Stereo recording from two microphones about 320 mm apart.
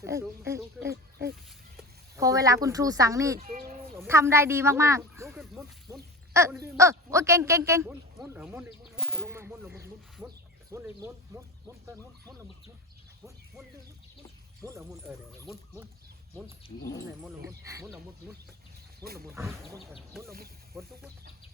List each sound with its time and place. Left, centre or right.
0.0 s speech: centre
2.1 s speech: centre
3.4 s a sound: right
3.9 s a sound: centre
10.7 s speech: centre
14.6 s speech: centre
17.2 s speech: centre
19.0 s speech: right
19.3 s speech: centre